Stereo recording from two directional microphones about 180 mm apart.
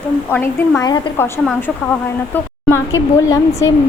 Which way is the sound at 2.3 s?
10° left (ahead or behind).